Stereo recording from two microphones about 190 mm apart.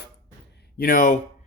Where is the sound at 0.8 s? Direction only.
45° left (ahead or behind).